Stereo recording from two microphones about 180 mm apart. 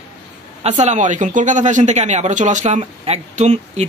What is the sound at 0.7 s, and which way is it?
Speech, 40° right (ahead or behind).